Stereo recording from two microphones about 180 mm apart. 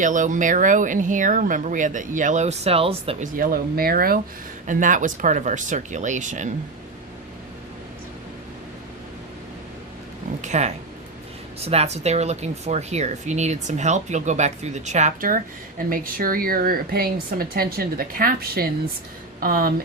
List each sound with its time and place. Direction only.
0.0 s speech: 45° right (ahead or behind)
3.3 s speech: 55° right (ahead or behind)
10.4 s a sound: 40° right (ahead or behind)
11.6 s speech: 35° right (ahead or behind); by 19.7 s 55° right (ahead or behind)